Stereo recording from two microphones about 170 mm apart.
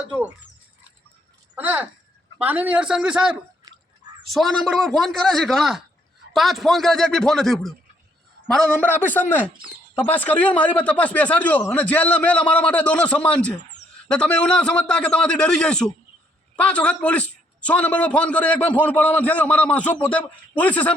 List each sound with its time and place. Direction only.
1.5 s a man's voice: 10° right (ahead or behind)
3.7 s drip: 25° right (ahead or behind)
4.3 s a man's voice: centre (ahead or behind)